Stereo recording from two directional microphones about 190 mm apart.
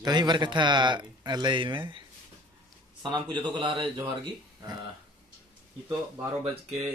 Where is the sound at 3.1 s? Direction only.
25° right (ahead or behind).